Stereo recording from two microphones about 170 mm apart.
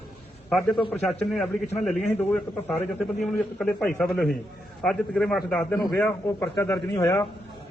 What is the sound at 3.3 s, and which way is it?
A man's voice, 5° left (ahead or behind).